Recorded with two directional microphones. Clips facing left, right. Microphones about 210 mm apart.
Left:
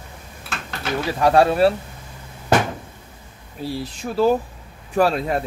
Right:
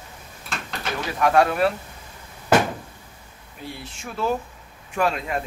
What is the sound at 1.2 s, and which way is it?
Speech, 30° left (ahead or behind).